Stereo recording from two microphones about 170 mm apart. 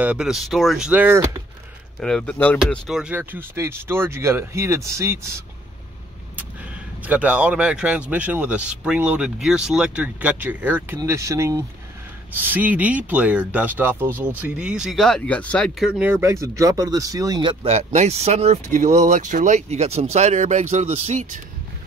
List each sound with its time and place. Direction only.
0.0 s speech: 5° right (ahead or behind)
2.0 s speech: 5° left (ahead or behind)
2.7 s speech: 5° right (ahead or behind)
7.1 s speech: 5° right (ahead or behind)
16.0 s speech: 15° right (ahead or behind); by 21.4 s 45° right (ahead or behind)